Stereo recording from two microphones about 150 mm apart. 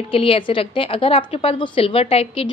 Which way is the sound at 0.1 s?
35° left (ahead or behind).